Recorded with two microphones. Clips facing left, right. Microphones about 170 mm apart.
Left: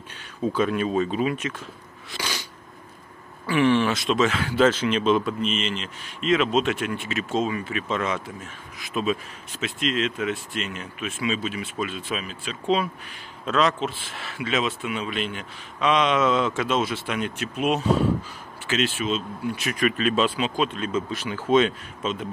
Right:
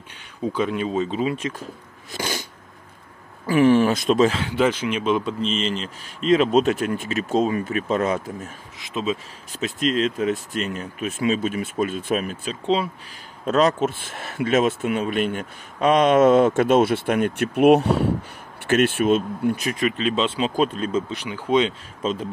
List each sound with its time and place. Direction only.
0.4 s speech: 15° right (ahead or behind)
2.1 s a sound: 50° right (ahead or behind)
3.4 s speech: 40° right (ahead or behind)
4.3 s speech: 20° right (ahead or behind)
5.2 s speech: 30° right (ahead or behind)
8.7 s speech: 20° right (ahead or behind)
9.5 s speech: 40° right (ahead or behind)
12.6 s speech: 30° right (ahead or behind)
13.5 s speech: 40° right (ahead or behind)
19.8 s speech: 20° right (ahead or behind)
20.3 s speech: 40° right (ahead or behind)
21.1 s speech: 15° right (ahead or behind)
22.0 s speech: 35° right (ahead or behind)